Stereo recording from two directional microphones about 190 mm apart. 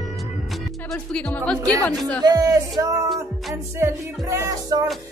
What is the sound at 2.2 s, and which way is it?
Music, 20° right (ahead or behind).